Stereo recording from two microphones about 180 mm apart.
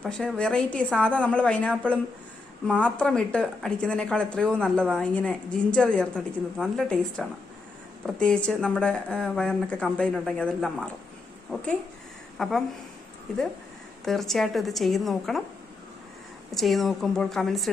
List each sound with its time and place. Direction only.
0.0 s speech: 5° left (ahead or behind)
2.8 s speech: 5° left (ahead or behind)
14.0 s speech: centre (ahead or behind)
16.5 s speech: centre (ahead or behind)